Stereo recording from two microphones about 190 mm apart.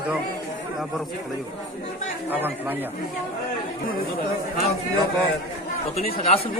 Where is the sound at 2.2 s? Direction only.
10° right (ahead or behind).